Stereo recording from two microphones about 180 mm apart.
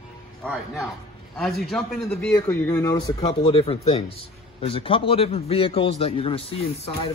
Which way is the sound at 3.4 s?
30° left (ahead or behind).